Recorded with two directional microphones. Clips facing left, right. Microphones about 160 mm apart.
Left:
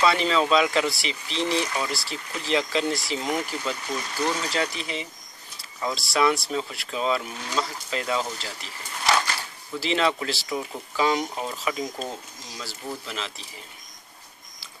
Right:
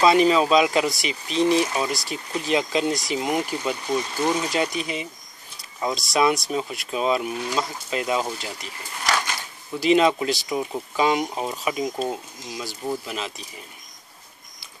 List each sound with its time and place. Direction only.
0.0 s speech: 15° right (ahead or behind)
9.8 s speech: 15° right (ahead or behind)